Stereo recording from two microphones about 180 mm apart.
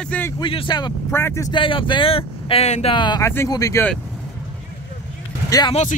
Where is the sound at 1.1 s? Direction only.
15° left (ahead or behind).